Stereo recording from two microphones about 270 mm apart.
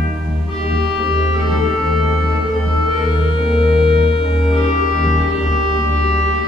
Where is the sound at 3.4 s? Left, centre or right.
Centre.